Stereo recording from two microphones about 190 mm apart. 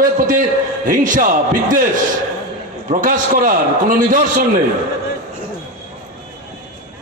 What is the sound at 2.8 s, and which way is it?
A man's voice, 45° right (ahead or behind).